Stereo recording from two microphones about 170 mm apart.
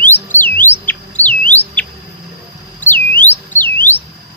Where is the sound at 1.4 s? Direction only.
10° left (ahead or behind).